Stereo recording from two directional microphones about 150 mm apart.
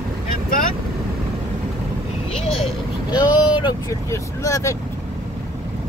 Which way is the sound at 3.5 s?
30° left (ahead or behind).